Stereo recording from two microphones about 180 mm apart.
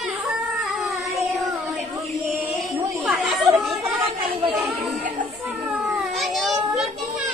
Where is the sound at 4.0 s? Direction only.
30° right (ahead or behind).